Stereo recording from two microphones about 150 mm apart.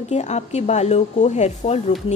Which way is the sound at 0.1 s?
50° left (ahead or behind).